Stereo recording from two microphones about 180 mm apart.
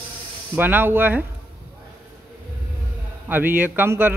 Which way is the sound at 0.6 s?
10° right (ahead or behind).